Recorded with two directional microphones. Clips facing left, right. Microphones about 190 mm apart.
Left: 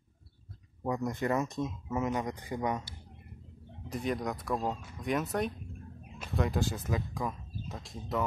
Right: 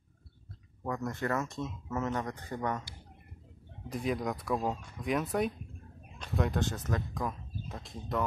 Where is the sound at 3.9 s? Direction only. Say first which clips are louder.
Even; centre (ahead or behind).